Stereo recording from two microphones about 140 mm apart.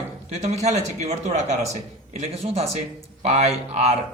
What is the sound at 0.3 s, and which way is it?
A man's voice, 50° right (ahead or behind).